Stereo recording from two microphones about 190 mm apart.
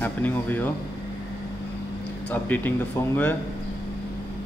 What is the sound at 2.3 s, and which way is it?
Speech, 10° left (ahead or behind).